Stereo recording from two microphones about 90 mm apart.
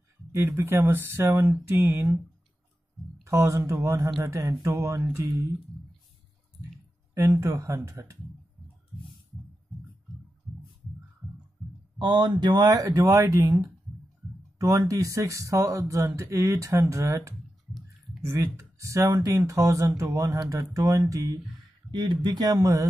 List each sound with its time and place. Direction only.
0.3 s speech: 30° right (ahead or behind)
3.3 s speech: 30° right (ahead or behind)
7.2 s speech: 35° right (ahead or behind)
12.0 s speech: 55° right (ahead or behind); by 21.3 s 35° right (ahead or behind)
21.9 s speech: 60° right (ahead or behind); by 22.8 s 40° right (ahead or behind)